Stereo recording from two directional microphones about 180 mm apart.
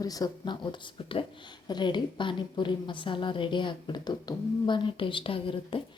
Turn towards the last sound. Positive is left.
turn(degrees=30)  # may be behind; listen again after turning